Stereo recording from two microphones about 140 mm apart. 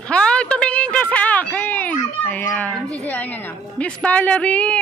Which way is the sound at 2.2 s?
10° left (ahead or behind).